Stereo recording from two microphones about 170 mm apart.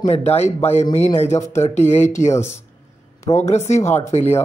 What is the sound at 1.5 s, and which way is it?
Speech, 15° left (ahead or behind).